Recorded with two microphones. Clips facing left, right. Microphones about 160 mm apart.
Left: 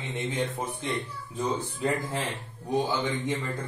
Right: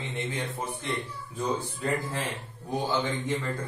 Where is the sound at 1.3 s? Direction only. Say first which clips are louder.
Even; 20° left (ahead or behind).